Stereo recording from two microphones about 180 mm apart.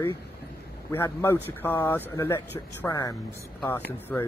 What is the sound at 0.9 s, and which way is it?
Speech, 10° left (ahead or behind).